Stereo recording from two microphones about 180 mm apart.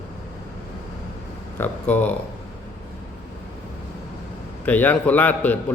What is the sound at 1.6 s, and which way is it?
Speech, 10° left (ahead or behind).